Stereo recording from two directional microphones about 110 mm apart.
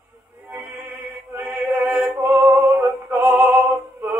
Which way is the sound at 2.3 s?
20° right (ahead or behind).